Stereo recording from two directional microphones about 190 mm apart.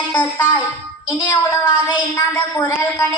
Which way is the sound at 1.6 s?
25° left (ahead or behind).